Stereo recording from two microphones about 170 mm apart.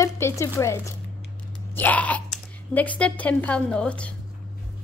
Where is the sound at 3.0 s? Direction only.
10° left (ahead or behind).